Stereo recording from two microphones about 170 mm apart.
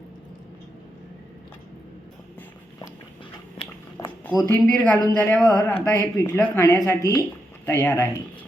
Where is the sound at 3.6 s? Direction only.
25° left (ahead or behind).